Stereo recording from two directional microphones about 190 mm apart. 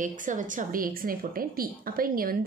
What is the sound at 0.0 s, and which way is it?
A woman's voice, 45° right (ahead or behind).